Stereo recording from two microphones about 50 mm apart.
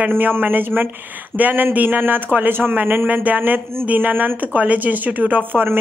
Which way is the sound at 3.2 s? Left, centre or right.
Right.